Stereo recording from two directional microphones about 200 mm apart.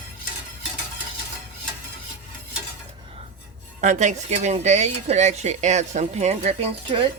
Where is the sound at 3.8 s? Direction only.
35° right (ahead or behind).